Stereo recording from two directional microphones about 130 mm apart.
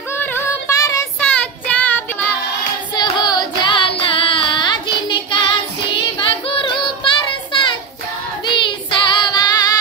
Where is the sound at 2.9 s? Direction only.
35° left (ahead or behind).